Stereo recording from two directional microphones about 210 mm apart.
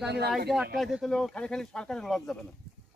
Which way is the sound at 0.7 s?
Centre (ahead or behind).